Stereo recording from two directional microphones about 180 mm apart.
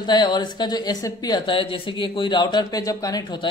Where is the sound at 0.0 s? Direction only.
25° left (ahead or behind).